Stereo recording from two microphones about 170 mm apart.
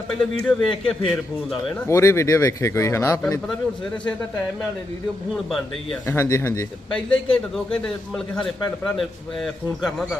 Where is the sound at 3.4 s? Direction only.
5° left (ahead or behind).